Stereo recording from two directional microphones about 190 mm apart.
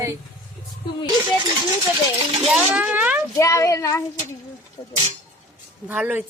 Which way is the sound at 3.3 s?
15° left (ahead or behind).